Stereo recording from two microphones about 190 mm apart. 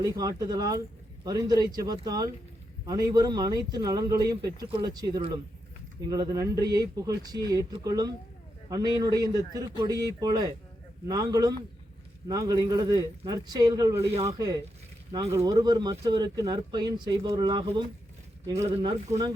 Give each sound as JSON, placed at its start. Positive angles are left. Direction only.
{"t": 0.0, "sound": "speech", "side_deg": -20}
{"t": 18.7, "sound": "speech", "side_deg": -30}